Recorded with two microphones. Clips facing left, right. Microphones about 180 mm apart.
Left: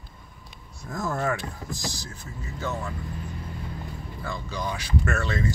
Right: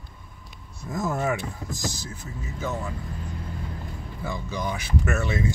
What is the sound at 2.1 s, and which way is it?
Speech, 15° right (ahead or behind).